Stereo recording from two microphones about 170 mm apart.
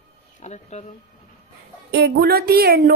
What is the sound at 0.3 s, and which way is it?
Speech, 40° left (ahead or behind).